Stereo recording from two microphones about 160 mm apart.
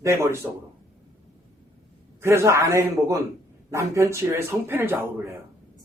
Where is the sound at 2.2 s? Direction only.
15° right (ahead or behind).